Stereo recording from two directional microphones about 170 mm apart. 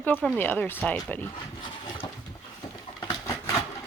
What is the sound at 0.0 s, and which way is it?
Speech, 10° left (ahead or behind).